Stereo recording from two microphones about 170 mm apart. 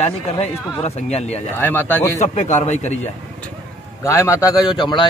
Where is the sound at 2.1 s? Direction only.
45° left (ahead or behind).